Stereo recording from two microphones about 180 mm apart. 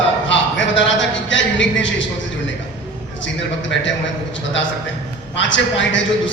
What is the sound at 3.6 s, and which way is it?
Speech, 90° left.